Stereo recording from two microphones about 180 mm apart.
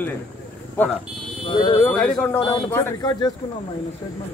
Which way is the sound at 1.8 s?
10° left (ahead or behind).